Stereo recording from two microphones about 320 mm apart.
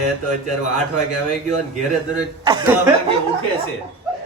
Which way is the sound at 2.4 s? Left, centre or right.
Centre.